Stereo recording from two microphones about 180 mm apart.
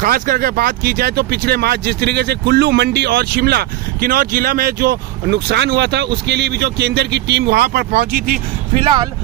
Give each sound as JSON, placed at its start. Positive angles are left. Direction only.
{"t": 0.0, "sound": "speech", "side_deg": -55}